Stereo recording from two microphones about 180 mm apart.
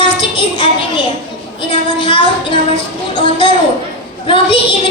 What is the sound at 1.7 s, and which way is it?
Music, 30° left (ahead or behind).